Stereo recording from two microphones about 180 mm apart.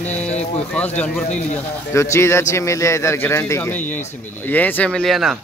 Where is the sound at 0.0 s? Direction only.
5° left (ahead or behind).